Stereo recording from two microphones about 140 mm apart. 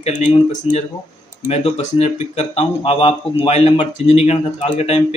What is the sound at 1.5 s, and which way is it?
A man's voice, 50° left (ahead or behind).